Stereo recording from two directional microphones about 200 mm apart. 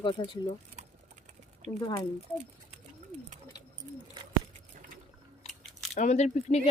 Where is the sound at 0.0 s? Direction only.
25° left (ahead or behind).